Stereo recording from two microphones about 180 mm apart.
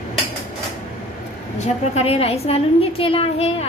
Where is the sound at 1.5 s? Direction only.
40° left (ahead or behind).